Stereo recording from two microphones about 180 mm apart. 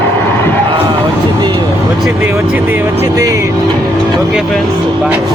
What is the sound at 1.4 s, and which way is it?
Vehicle, 25° right (ahead or behind).